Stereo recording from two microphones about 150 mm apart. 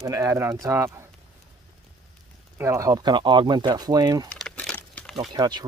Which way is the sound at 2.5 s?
20° right (ahead or behind).